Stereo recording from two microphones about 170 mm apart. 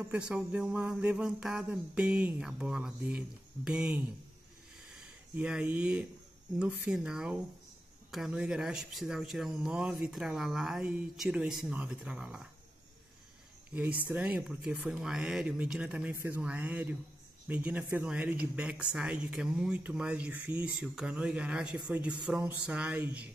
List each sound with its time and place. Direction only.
0.1 s speech: 5° right (ahead or behind)
5.0 s speech: 5° right (ahead or behind)
13.7 s speech: 5° right (ahead or behind)